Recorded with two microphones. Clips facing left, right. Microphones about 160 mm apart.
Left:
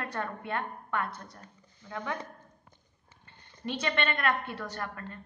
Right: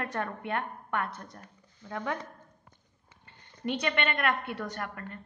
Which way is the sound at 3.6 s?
15° right (ahead or behind).